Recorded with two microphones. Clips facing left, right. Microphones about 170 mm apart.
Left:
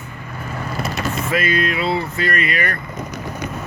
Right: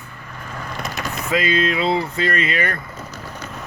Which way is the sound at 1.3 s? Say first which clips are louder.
Right 2 dB; 20° right (ahead or behind).